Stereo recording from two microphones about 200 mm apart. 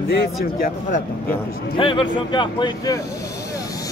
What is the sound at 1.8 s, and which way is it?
Speech, 25° left (ahead or behind).